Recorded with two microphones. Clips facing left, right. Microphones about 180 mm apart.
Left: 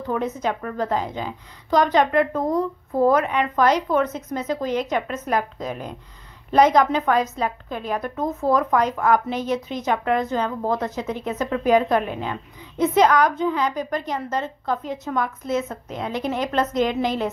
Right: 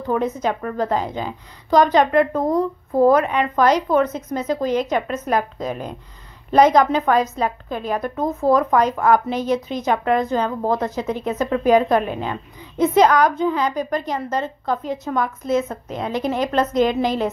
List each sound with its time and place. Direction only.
0.0 s a woman's voice: 35° right (ahead or behind)